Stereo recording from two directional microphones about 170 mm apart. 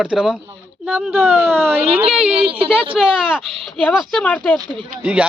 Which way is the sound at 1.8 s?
35° right (ahead or behind).